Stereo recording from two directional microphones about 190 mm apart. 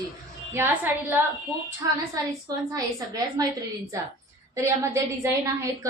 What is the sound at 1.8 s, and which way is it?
Speech, 15° right (ahead or behind).